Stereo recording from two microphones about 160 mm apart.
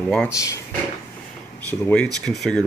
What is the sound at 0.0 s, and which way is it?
Speech, 5° left (ahead or behind).